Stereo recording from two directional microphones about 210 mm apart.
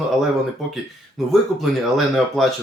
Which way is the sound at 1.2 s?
Centre (ahead or behind).